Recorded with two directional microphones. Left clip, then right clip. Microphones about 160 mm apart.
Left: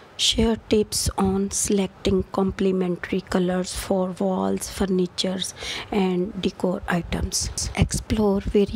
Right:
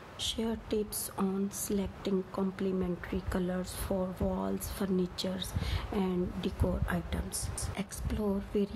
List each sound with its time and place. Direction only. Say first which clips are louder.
0.2 s speech: left 14 dB; 45° left (ahead or behind)